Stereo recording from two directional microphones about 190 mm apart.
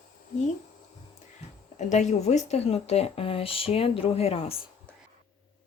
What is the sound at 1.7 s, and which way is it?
Speech, 40° left (ahead or behind).